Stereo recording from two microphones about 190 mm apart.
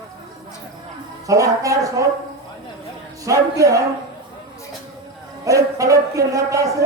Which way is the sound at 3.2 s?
15° right (ahead or behind).